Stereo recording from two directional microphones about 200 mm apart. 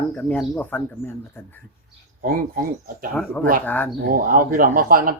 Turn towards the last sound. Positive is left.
turn(degrees=-45)  # may be behind; listen again after turning